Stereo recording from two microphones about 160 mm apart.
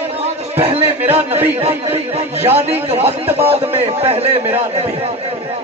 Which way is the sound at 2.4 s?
40° right (ahead or behind).